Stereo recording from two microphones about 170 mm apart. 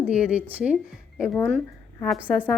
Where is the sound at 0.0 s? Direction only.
5° right (ahead or behind).